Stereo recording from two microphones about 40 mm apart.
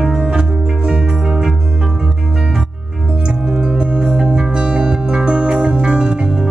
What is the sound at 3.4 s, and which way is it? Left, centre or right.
Music, right.